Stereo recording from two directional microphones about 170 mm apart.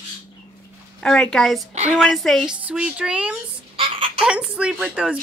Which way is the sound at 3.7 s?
30° right (ahead or behind).